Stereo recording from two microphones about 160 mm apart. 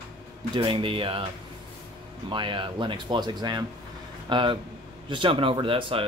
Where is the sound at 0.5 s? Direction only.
30° right (ahead or behind).